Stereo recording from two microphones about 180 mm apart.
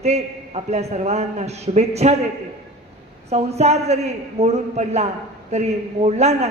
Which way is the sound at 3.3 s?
35° right (ahead or behind).